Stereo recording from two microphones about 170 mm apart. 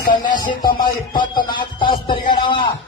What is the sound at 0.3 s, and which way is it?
Speech, 50° left (ahead or behind).